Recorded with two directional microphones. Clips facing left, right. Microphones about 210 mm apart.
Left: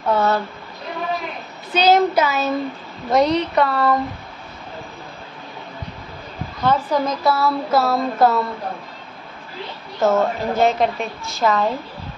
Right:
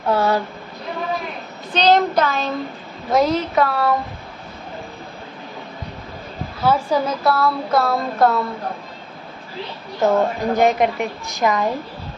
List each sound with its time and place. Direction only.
0.1 s a woman's voice: 10° right (ahead or behind)
1.7 s speech: 5° left (ahead or behind)
3.1 s a sound: centre (ahead or behind)
6.6 s a woman's voice: 10° right (ahead or behind)
7.3 s a sound: 5° left (ahead or behind)
10.0 s a woman's voice: 15° right (ahead or behind)